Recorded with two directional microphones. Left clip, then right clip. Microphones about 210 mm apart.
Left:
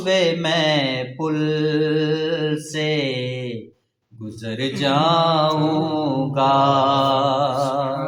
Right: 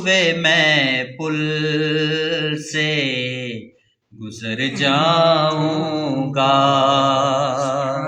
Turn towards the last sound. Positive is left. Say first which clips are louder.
# right 1 dB
turn(degrees=-35)  # may be behind; listen again after turning